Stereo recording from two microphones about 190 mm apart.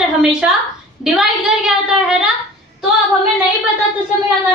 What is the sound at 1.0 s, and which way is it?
A woman's voice, centre (ahead or behind).